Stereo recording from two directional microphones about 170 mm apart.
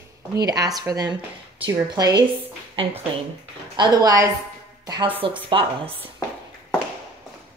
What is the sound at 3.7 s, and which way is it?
A woman's voice, 25° right (ahead or behind).